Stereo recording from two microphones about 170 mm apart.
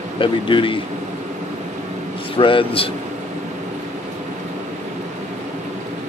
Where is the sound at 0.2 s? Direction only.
30° left (ahead or behind).